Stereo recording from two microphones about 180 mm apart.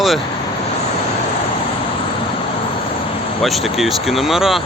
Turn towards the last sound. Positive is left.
turn(degrees=0)  # may be behind; listen again after turning